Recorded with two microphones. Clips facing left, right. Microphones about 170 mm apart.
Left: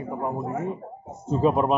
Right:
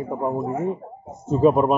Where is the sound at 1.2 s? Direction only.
45° right (ahead or behind).